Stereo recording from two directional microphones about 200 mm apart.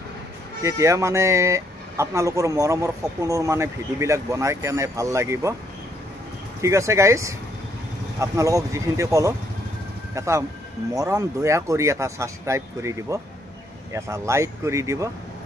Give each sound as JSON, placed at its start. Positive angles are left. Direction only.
{"t": 0.6, "sound": "speech", "side_deg": -15}
{"t": 6.6, "sound": "speech", "side_deg": -15}